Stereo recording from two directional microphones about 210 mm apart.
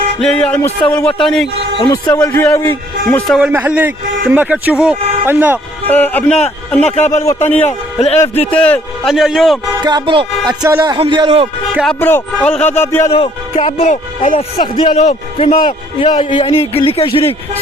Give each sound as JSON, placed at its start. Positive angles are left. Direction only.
{"t": 0.2, "sound": "a man's voice", "side_deg": 5}
{"t": 1.8, "sound": "a man's voice", "side_deg": 20}
{"t": 5.9, "sound": "a man's voice", "side_deg": 10}
{"t": 9.8, "sound": "speech", "side_deg": -20}
{"t": 11.7, "sound": "a man's voice", "side_deg": 0}
{"t": 13.1, "sound": "speech", "side_deg": 25}